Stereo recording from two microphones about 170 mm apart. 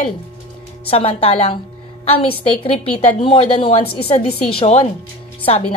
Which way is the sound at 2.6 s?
35° left (ahead or behind).